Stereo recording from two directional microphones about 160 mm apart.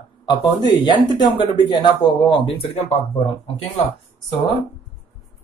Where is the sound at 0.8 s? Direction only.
30° left (ahead or behind).